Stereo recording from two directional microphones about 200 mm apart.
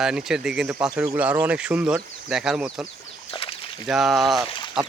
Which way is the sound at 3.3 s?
30° left (ahead or behind).